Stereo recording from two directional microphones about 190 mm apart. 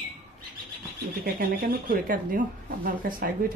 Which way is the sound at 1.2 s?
50° right (ahead or behind).